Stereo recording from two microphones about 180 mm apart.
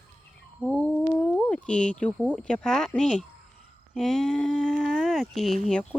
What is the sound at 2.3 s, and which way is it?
Speech, 5° left (ahead or behind).